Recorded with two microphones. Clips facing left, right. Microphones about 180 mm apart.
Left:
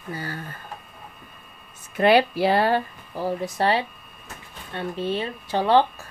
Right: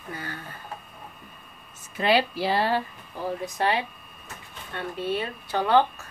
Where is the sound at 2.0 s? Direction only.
55° left (ahead or behind).